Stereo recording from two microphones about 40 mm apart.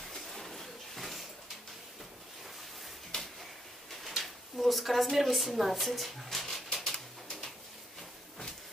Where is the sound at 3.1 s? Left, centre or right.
Left.